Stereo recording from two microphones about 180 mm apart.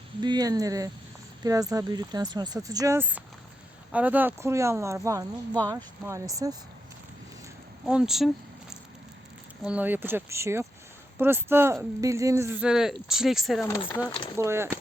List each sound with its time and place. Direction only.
0.2 s speech: 25° right (ahead or behind)
7.9 s speech: 5° right (ahead or behind)
9.6 s speech: 10° right (ahead or behind)
14.3 s speech: 15° right (ahead or behind)